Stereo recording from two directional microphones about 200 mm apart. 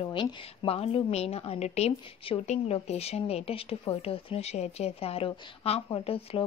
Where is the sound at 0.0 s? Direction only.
25° left (ahead or behind).